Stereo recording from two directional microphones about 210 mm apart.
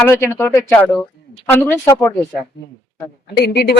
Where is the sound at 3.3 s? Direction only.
50° left (ahead or behind).